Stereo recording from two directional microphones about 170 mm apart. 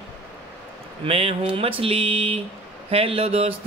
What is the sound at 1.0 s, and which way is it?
Speech, 35° right (ahead or behind).